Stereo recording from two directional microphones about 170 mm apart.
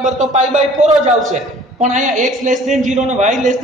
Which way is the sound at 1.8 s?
45° right (ahead or behind).